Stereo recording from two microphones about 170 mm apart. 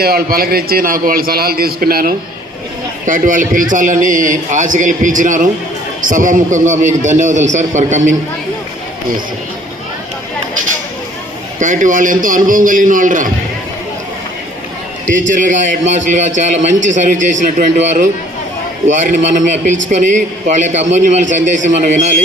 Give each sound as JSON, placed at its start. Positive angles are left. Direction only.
{"t": 0.0, "sound": "a man's voice", "side_deg": -65}
{"t": 11.6, "sound": "a man's voice", "side_deg": -50}
{"t": 15.0, "sound": "a man's voice", "side_deg": -50}